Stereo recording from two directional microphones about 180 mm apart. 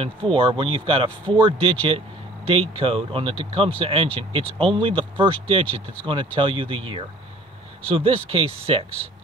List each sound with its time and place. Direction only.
0.0 s speech: 30° right (ahead or behind)